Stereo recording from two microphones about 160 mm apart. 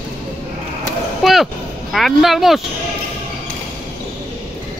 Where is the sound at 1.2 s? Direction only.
Centre (ahead or behind).